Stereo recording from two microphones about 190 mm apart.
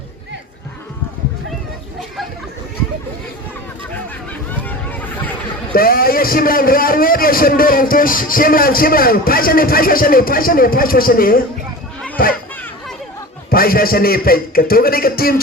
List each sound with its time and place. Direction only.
4.6 s a sound: 10° left (ahead or behind)
5.7 s a man's voice: 50° left (ahead or behind)
13.5 s a man's voice: 50° left (ahead or behind)